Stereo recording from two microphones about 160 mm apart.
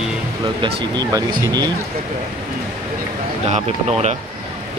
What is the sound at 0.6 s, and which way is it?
Speech, 25° right (ahead or behind).